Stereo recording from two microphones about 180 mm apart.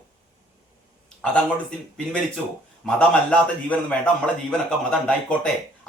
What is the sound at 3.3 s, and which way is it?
A man's voice, 5° left (ahead or behind).